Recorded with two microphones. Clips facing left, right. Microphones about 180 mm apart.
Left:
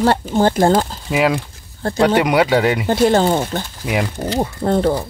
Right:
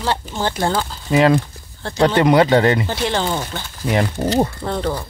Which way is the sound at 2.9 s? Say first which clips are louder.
Left 7 dB; 45° left (ahead or behind).